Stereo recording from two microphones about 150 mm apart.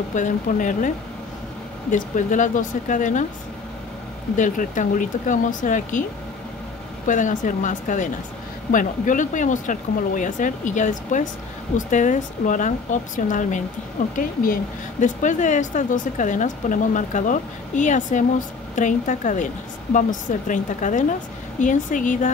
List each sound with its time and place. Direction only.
0.1 s speech: 60° left (ahead or behind)
4.4 s speech: 60° left (ahead or behind)
7.1 s speech: 60° left (ahead or behind)